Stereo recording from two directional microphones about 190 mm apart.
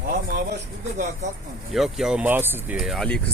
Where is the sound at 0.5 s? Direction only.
40° right (ahead or behind).